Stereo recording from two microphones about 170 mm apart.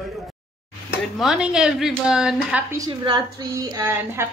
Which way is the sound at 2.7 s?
25° right (ahead or behind).